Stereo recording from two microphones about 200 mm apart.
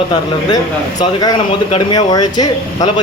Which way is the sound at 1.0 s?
20° left (ahead or behind).